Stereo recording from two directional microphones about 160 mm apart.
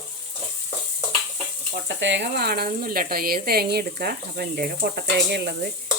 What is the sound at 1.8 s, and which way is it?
Speech, 90° right.